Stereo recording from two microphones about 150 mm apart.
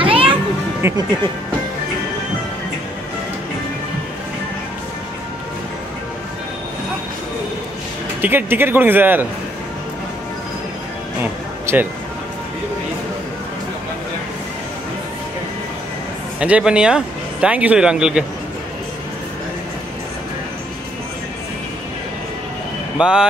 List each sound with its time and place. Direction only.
0.0 s children playing: 35° right (ahead or behind)
0.8 s speech: 15° right (ahead or behind)
8.2 s speech: 15° right (ahead or behind)
11.6 s a sound: 15° right (ahead or behind)
16.3 s speech: 10° right (ahead or behind)
22.9 s speech: 5° right (ahead or behind)